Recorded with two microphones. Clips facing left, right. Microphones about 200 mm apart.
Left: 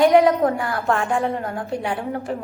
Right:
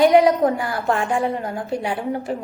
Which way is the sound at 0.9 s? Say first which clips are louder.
Even; 15° right (ahead or behind).